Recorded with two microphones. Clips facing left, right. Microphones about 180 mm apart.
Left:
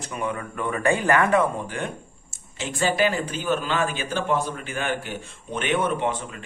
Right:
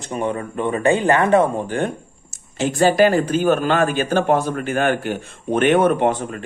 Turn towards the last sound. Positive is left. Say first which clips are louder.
# right 9 dB
turn(degrees=-55)  # may be behind; listen again after turning